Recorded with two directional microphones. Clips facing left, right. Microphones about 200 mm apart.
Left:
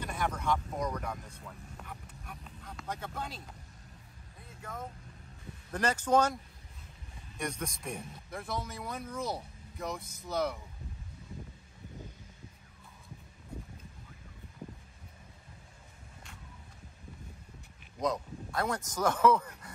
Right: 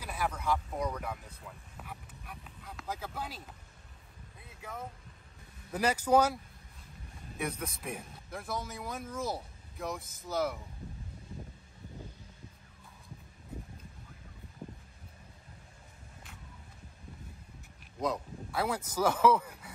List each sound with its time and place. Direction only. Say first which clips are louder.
0.0 s speech: left 1 dB; 5° right (ahead or behind)
4.4 s vehicle: even; 5° right (ahead or behind)
5.7 s speech: right 1 dB; 10° right (ahead or behind)
7.3 s a man's voice: even; 5° right (ahead or behind)
13.5 s a sound: even; 5° right (ahead or behind)
18.0 s speech: left 1 dB; 5° right (ahead or behind)